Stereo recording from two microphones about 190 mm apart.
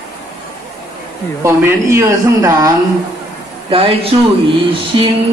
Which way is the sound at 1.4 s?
15° right (ahead or behind).